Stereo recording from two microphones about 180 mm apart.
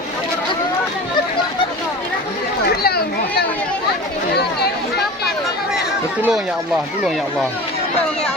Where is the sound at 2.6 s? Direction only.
60° left (ahead or behind).